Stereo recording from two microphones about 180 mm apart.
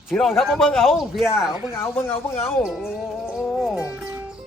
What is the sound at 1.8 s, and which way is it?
Speech, 10° left (ahead or behind).